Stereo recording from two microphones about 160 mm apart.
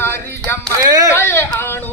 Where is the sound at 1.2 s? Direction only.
15° left (ahead or behind).